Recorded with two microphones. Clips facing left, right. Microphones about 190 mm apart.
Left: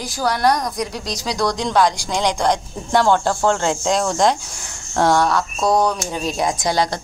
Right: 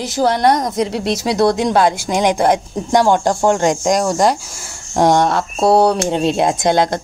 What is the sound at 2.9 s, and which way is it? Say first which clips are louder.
Speech: right 3 dB; 15° right (ahead or behind).